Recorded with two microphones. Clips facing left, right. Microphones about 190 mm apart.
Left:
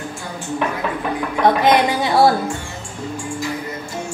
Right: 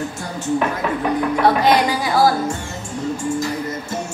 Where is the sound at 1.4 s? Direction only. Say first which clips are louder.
Left 2 dB; 20° left (ahead or behind).